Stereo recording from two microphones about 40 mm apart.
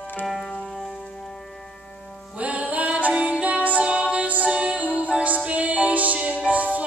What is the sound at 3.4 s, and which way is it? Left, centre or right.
Music, right.